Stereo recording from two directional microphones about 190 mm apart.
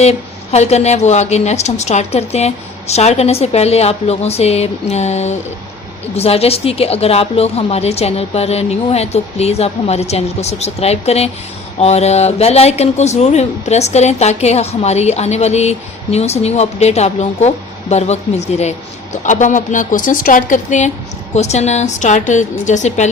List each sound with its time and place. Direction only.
0.0 s a woman's voice: 35° left (ahead or behind)